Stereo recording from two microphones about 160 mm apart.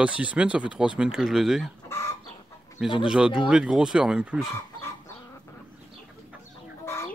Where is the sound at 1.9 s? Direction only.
15° left (ahead or behind).